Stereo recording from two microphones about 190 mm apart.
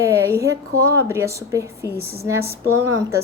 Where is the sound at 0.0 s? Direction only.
15° right (ahead or behind).